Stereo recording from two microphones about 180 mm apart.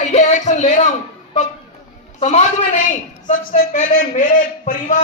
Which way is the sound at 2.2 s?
40° left (ahead or behind).